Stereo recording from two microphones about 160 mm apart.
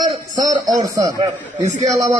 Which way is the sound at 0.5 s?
25° right (ahead or behind).